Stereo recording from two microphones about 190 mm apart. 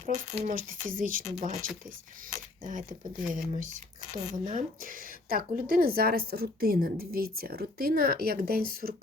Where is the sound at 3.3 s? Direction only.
45° right (ahead or behind).